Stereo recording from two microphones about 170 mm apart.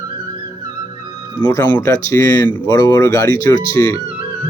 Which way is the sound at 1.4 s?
25° left (ahead or behind).